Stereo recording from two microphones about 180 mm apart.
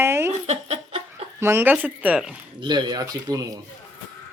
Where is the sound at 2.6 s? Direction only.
25° right (ahead or behind).